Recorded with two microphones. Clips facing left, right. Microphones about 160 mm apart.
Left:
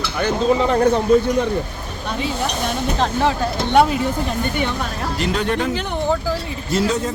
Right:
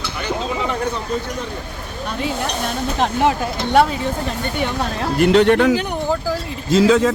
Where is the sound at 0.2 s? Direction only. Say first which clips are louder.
Left 6 dB; 45° left (ahead or behind).